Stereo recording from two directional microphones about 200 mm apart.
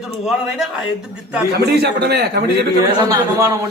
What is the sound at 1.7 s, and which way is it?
Speech, 55° right (ahead or behind).